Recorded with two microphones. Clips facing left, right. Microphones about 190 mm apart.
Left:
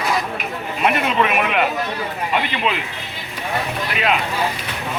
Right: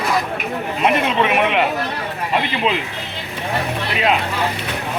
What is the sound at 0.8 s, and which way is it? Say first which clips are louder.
Speech: right 1 dB; 25° right (ahead or behind).